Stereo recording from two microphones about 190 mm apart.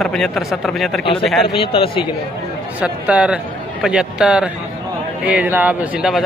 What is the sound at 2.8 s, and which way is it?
Speech, 5° right (ahead or behind).